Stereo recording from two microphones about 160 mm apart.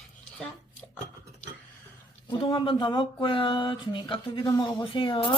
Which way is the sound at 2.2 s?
30° left (ahead or behind).